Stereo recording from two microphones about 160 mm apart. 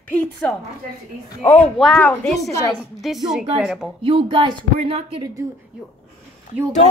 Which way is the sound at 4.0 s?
35° right (ahead or behind).